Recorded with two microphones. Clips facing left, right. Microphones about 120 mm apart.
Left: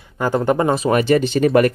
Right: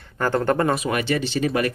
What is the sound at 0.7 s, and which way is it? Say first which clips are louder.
Speech: left 7 dB; 35° left (ahead or behind).